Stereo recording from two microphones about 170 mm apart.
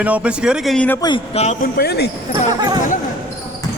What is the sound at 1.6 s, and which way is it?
Speech, 65° left (ahead or behind).